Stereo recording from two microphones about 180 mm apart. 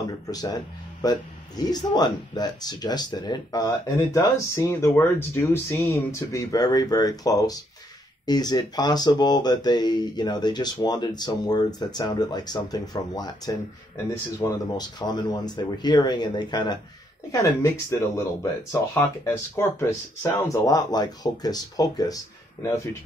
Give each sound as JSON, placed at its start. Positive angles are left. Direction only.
{"t": 0.0, "sound": "speech", "side_deg": 20}